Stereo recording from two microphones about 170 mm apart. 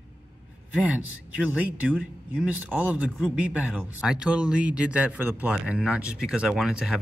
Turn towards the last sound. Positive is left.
turn(degrees=-5)  # may be behind; listen again after turning